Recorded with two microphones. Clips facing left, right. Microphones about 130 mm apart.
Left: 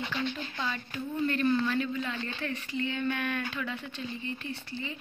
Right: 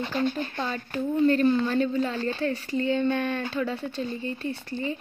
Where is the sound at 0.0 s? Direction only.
40° right (ahead or behind).